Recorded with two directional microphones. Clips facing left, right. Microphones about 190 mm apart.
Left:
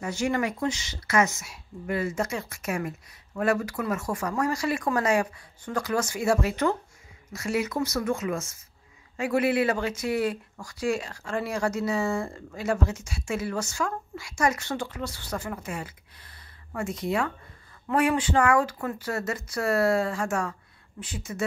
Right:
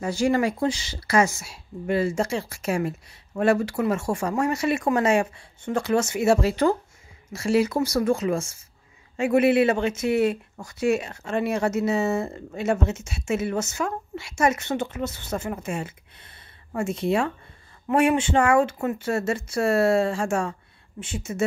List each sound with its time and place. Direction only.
0.0 s a woman's voice: 30° right (ahead or behind)